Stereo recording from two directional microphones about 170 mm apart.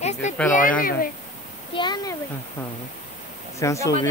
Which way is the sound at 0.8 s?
55° left (ahead or behind).